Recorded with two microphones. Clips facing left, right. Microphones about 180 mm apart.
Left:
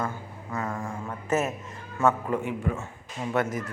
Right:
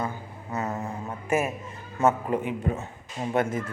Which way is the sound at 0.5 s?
20° right (ahead or behind).